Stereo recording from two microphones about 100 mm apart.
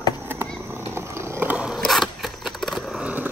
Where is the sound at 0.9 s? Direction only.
25° right (ahead or behind).